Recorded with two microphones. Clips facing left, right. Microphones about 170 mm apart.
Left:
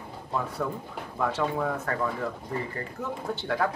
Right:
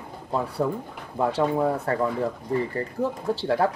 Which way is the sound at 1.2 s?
30° right (ahead or behind).